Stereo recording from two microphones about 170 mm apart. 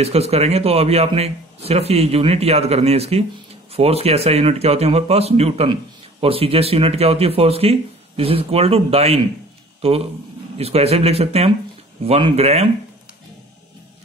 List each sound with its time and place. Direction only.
0.0 s speech: 35° right (ahead or behind)